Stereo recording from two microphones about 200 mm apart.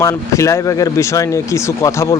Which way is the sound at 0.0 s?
15° left (ahead or behind).